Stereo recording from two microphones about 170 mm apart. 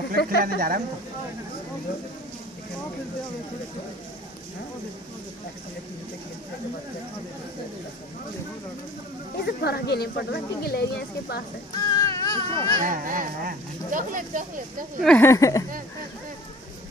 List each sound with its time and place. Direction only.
0.2 s speech: 80° left
0.6 s a woman's voice: 55° right (ahead or behind)
9.4 s speech: 70° left (ahead or behind)
11.7 s baby cry: 20° left (ahead or behind)
12.8 s speech: 55° right (ahead or behind)
15.0 s speech: 5° left (ahead or behind)
15.2 s speech: 20° left (ahead or behind)